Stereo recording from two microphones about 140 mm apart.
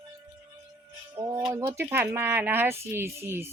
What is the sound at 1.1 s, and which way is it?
Music, 25° right (ahead or behind).